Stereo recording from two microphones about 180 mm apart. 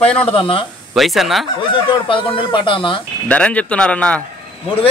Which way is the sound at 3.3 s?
5° left (ahead or behind).